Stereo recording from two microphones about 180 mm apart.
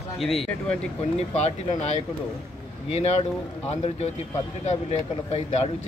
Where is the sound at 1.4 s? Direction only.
40° left (ahead or behind).